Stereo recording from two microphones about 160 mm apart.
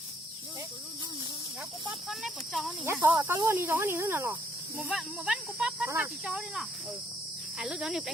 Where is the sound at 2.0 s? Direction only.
Centre (ahead or behind).